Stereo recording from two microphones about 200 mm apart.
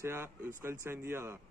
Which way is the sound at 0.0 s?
10° right (ahead or behind).